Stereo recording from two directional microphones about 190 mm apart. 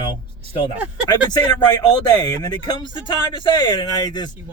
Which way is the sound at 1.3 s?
20° left (ahead or behind).